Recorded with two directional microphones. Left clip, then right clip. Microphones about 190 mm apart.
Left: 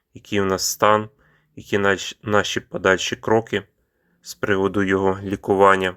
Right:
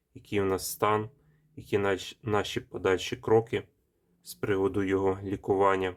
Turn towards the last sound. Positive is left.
turn(degrees=25)  # may be behind; listen again after turning